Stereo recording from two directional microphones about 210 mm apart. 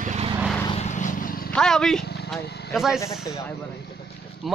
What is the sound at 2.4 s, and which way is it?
Vehicle, 50° left (ahead or behind).